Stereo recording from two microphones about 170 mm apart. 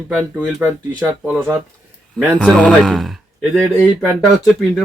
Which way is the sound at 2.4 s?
5° left (ahead or behind).